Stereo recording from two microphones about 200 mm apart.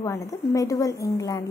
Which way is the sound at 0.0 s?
15° left (ahead or behind).